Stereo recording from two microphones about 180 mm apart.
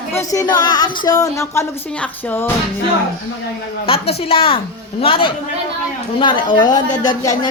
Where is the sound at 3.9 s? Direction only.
30° left (ahead or behind).